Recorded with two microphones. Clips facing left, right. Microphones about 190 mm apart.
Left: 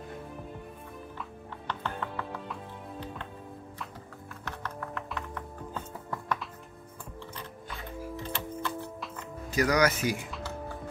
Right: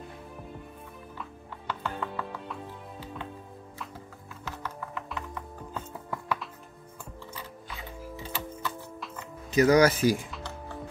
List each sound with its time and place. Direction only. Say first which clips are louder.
1.7 s music: right 2 dB; 5° right (ahead or behind)
4.5 s music: even; 5° right (ahead or behind)
8.2 s music: right 1 dB; 5° right (ahead or behind)
9.5 s speech: right 5 dB; 25° right (ahead or behind)